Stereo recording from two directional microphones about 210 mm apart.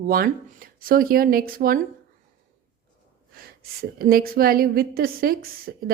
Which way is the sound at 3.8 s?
45° right (ahead or behind).